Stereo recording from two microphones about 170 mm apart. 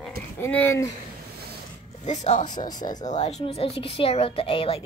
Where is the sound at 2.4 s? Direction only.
25° left (ahead or behind).